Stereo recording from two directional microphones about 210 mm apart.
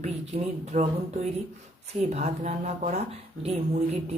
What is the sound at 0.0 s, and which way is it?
Speech, 30° right (ahead or behind).